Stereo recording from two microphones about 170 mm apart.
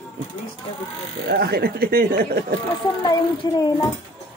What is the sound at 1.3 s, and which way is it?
Speech, 65° right (ahead or behind).